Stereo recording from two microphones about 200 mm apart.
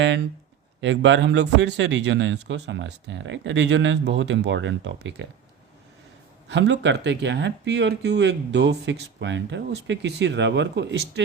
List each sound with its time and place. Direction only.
0.8 s speech: 65° right (ahead or behind)
6.5 s speech: 60° right (ahead or behind)